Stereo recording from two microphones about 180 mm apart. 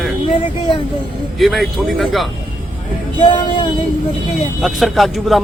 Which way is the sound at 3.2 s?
25° left (ahead or behind).